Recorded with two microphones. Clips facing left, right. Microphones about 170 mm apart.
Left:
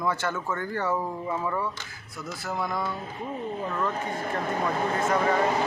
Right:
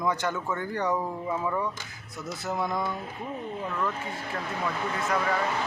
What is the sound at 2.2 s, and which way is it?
Speech, 20° right (ahead or behind).